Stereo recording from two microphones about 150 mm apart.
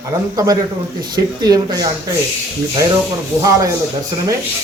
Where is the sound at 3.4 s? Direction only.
20° right (ahead or behind).